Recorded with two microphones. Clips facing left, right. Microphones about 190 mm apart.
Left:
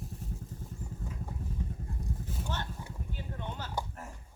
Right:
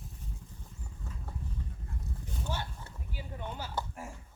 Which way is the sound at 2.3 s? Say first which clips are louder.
Left 2 dB; 5° left (ahead or behind).